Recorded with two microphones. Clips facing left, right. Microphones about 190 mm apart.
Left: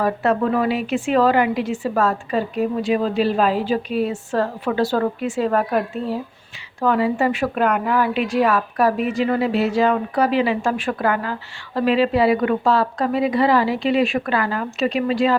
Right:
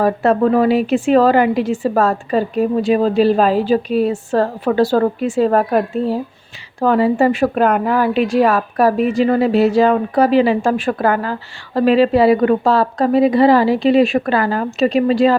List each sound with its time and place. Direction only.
0.0 s a woman's voice: 40° right (ahead or behind)